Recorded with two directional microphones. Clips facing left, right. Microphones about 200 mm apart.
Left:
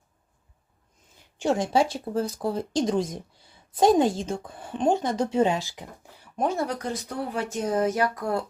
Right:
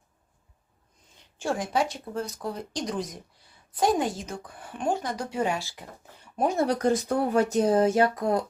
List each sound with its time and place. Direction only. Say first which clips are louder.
1.4 s a woman's voice: left 4 dB; 20° left (ahead or behind)
6.3 s speech: even; 10° right (ahead or behind)
6.8 s speech: right 7 dB; 45° right (ahead or behind); by 8.4 s 20° right (ahead or behind)